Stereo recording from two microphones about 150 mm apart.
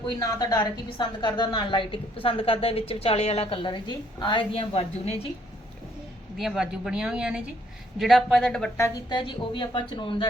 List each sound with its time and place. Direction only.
0.2 s a woman's voice: 25° left (ahead or behind); by 5.1 s 45° left (ahead or behind)
6.3 s speech: centre (ahead or behind)
9.0 s a woman's voice: 30° left (ahead or behind)